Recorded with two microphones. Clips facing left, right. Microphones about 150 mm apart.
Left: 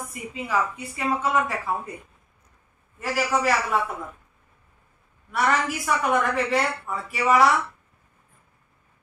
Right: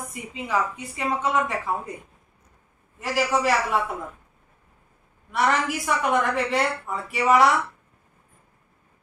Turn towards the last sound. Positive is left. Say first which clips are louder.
# right 1 dB
turn(degrees=-20)  # may be behind; listen again after turning